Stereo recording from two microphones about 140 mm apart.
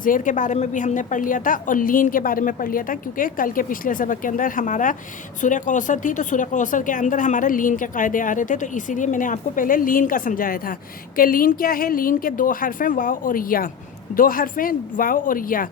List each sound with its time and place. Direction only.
0.0 s a woman's voice: 70° left (ahead or behind)